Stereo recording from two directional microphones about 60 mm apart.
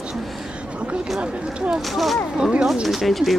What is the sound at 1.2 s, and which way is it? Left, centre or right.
Speech, centre.